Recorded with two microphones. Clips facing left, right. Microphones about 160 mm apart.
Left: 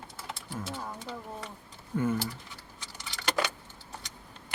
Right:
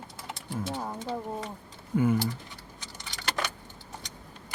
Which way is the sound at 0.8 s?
30° right (ahead or behind).